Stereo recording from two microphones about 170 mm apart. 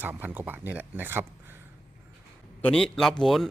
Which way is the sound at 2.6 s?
5° left (ahead or behind).